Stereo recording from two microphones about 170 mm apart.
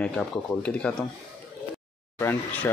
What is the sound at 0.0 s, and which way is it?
Speech, 5° left (ahead or behind).